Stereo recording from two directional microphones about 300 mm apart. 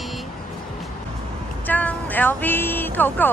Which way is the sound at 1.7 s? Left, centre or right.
Centre.